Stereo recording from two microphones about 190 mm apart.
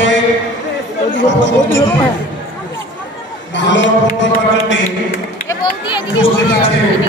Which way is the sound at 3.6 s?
75° left (ahead or behind).